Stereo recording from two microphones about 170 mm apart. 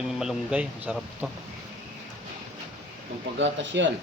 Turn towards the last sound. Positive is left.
turn(degrees=-90)